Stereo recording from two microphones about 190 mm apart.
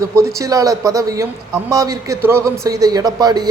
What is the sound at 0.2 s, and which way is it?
A man's voice, 15° right (ahead or behind).